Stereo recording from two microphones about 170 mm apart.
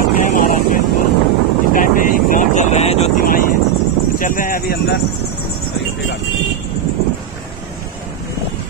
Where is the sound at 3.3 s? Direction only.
55° left (ahead or behind).